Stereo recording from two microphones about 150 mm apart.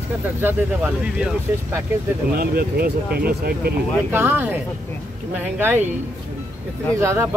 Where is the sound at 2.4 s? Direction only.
90° right.